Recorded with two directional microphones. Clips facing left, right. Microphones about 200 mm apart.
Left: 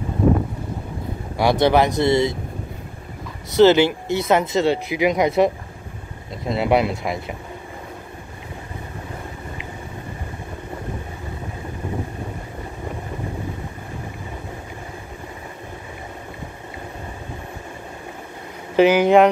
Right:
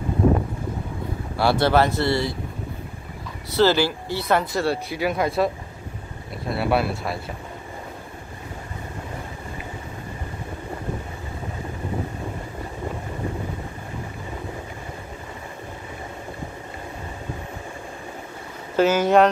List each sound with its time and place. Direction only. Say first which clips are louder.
1.3 s speech: left 3 dB; 15° left (ahead or behind)
3.5 s speech: left 6 dB; 20° left (ahead or behind)
18.8 s speech: left 4 dB; 15° left (ahead or behind)